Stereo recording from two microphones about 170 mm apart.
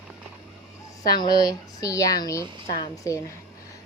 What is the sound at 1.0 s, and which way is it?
A woman's voice, 25° left (ahead or behind).